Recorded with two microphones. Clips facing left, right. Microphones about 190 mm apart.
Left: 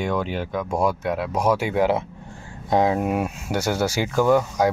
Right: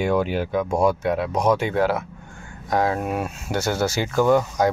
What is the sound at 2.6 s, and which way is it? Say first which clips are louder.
Speech: left 2 dB; 20° left (ahead or behind).